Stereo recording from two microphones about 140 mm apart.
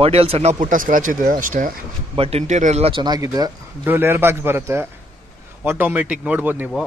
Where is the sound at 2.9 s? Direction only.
30° right (ahead or behind).